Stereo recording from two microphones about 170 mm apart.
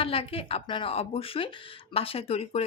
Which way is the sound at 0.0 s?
35° left (ahead or behind).